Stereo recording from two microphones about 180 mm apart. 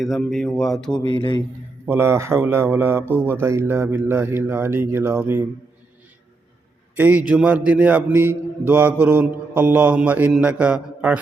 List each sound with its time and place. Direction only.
0.0 s speech: centre (ahead or behind)
0.9 s speech: 25° left (ahead or behind)
1.9 s a man's voice: 15° right (ahead or behind)
6.9 s a man's voice: 10° right (ahead or behind)